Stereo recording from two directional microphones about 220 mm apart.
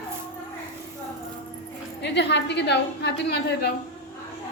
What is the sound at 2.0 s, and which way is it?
A woman's voice, 50° left (ahead or behind).